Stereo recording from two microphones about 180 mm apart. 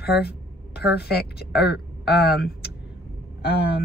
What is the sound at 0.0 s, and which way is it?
A woman's voice, 60° left (ahead or behind).